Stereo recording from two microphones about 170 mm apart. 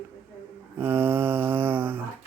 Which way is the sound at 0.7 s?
10° right (ahead or behind).